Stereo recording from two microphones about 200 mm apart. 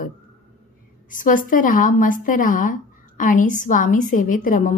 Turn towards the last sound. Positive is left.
turn(degrees=40)  # may be behind; listen again after turning